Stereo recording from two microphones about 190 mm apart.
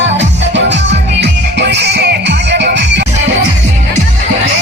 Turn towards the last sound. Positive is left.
turn(degrees=-65)  # may be behind; listen again after turning